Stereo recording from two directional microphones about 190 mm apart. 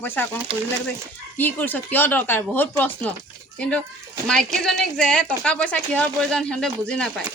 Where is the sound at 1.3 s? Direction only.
10° left (ahead or behind).